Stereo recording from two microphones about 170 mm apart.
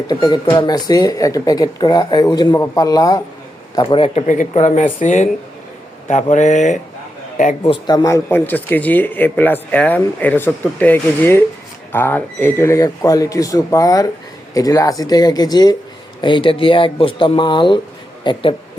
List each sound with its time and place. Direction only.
0.1 s speech: 25° left (ahead or behind)
4.3 s speech: 45° left (ahead or behind)
7.7 s speech: 25° left (ahead or behind)